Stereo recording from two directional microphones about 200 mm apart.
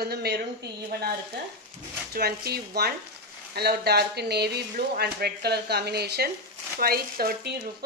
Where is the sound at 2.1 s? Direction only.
50° right (ahead or behind).